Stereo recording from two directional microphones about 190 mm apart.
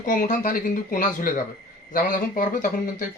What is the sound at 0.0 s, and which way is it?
Speech, 45° left (ahead or behind).